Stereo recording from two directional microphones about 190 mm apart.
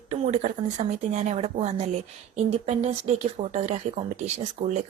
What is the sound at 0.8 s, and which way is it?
Speech, 40° right (ahead or behind).